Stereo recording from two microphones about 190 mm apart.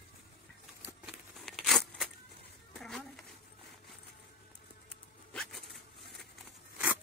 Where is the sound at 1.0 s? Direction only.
Centre (ahead or behind).